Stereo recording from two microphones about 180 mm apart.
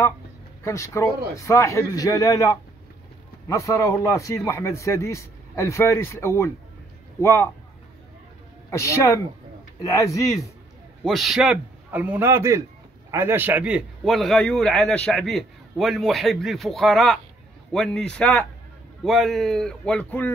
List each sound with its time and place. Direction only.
0.7 s a man's voice: 15° left (ahead or behind)
8.6 s a man's voice: 15° left (ahead or behind)
11.1 s a man's voice: centre (ahead or behind)